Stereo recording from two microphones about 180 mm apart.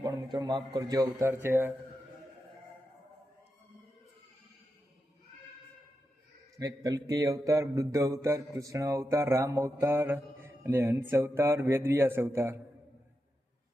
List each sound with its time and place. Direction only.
0.0 s a man's voice: 20° right (ahead or behind)
6.6 s speech: 20° right (ahead or behind)